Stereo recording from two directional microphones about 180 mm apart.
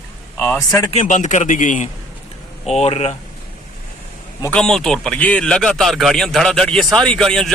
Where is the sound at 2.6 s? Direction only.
35° left (ahead or behind).